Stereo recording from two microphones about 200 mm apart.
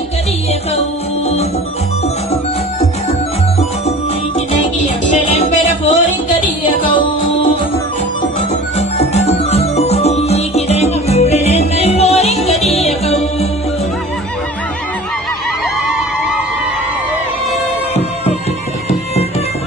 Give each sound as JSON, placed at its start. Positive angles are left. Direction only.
{"t": 4.7, "sound": "music", "side_deg": 40}
{"t": 8.7, "sound": "music", "side_deg": 30}